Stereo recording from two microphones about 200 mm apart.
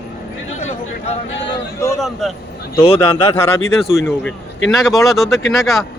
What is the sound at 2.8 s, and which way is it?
Speech, 30° left (ahead or behind).